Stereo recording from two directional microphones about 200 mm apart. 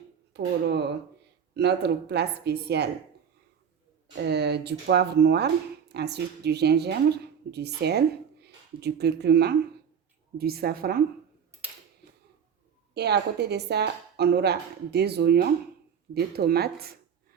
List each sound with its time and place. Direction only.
0.3 s speech: 55° right (ahead or behind)
4.2 s a woman's voice: 55° right (ahead or behind)
12.9 s speech: 55° right (ahead or behind)